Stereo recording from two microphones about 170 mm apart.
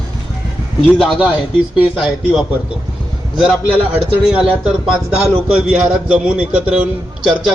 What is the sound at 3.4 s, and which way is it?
A man's voice, 5° right (ahead or behind).